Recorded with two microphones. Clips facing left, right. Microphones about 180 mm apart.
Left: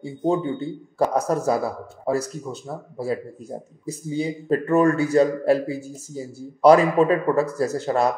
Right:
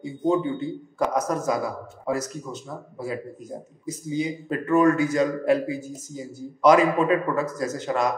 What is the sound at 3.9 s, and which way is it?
A man's voice, 35° left (ahead or behind).